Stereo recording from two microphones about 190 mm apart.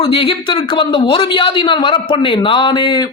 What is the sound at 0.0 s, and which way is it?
A man's voice, 30° left (ahead or behind).